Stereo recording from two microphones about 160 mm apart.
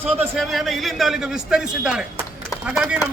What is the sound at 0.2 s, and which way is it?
A man's voice, centre (ahead or behind).